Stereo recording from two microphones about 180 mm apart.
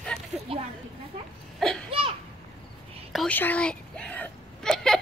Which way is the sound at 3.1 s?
5° left (ahead or behind).